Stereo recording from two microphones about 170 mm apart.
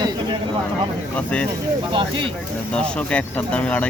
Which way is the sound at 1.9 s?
30° right (ahead or behind).